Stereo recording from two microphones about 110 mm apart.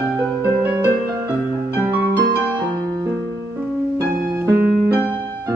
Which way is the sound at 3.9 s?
20° right (ahead or behind).